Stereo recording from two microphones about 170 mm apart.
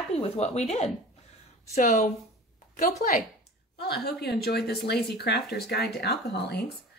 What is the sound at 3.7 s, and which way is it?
Speech, 70° left (ahead or behind).